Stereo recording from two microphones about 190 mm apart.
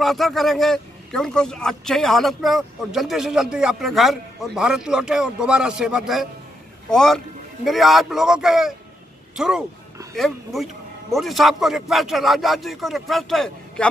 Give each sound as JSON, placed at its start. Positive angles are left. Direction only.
{"t": 0.0, "sound": "a man's voice", "side_deg": 0}